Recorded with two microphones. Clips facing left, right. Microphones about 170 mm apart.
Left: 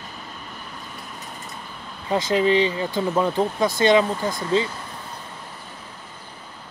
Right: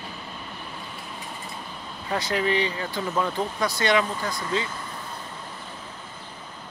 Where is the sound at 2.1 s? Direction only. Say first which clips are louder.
Left 6 dB; 20° left (ahead or behind).